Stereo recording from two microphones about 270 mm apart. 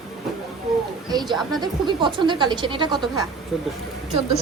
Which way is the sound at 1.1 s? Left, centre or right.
Centre.